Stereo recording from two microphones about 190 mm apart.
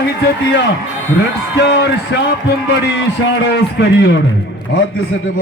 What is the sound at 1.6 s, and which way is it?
Speech, 70° left (ahead or behind).